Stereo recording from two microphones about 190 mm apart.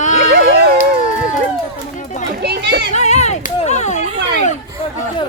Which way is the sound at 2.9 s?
35° left (ahead or behind).